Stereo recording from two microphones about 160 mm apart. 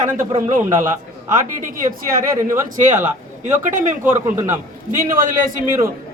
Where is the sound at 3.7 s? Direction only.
55° right (ahead or behind).